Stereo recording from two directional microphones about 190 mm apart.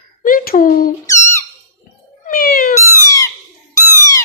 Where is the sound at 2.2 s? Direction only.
50° left (ahead or behind).